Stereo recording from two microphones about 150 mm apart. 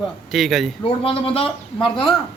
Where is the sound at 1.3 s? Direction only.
35° left (ahead or behind).